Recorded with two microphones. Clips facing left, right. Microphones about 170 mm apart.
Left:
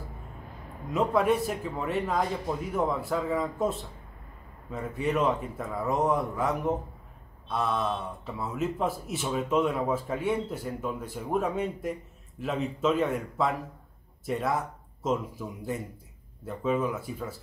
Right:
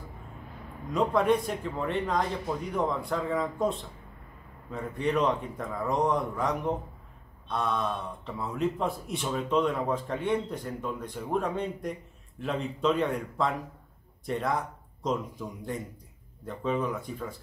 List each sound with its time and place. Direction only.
0.9 s speech: 5° left (ahead or behind)